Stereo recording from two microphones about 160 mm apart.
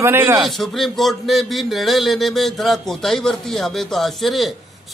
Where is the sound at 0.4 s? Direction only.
Centre (ahead or behind).